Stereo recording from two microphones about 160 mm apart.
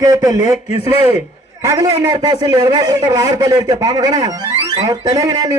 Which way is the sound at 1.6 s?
20° right (ahead or behind).